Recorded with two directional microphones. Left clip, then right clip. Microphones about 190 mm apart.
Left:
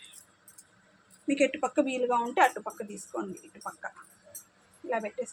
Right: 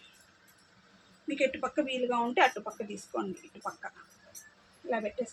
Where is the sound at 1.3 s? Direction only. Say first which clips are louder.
Left 3 dB; 55° left (ahead or behind).